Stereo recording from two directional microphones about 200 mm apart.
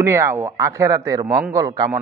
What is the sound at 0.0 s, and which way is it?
A man's voice, 15° right (ahead or behind).